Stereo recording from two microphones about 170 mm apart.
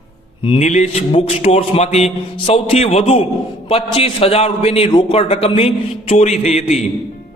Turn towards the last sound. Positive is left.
turn(degrees=40)  # may be behind; listen again after turning